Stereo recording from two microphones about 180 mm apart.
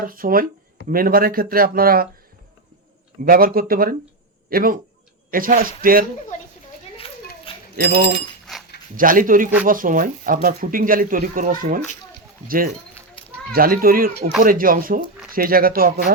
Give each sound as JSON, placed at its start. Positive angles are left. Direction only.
{"t": 0.0, "sound": "speech", "side_deg": -50}
{"t": 3.2, "sound": "a man's voice", "side_deg": -55}
{"t": 6.9, "sound": "children playing", "side_deg": 30}
{"t": 7.8, "sound": "speech", "side_deg": -60}
{"t": 8.5, "sound": "a sound", "side_deg": 5}
{"t": 9.0, "sound": "speech", "side_deg": -50}
{"t": 13.2, "sound": "a sound", "side_deg": 30}
{"t": 13.5, "sound": "speech", "side_deg": -55}